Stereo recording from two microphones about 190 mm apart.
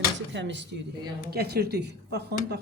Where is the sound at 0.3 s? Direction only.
70° right (ahead or behind).